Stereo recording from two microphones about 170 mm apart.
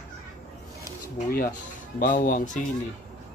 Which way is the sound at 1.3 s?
60° left (ahead or behind).